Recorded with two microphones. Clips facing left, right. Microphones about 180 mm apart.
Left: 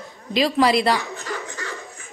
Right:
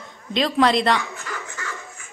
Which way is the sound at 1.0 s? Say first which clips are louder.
Left 2 dB; 35° left (ahead or behind).